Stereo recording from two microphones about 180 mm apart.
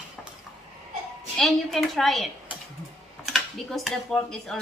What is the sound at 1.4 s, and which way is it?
Speech, centre (ahead or behind).